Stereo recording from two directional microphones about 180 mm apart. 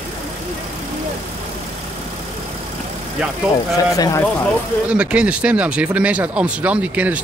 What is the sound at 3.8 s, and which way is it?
Speech, 20° left (ahead or behind).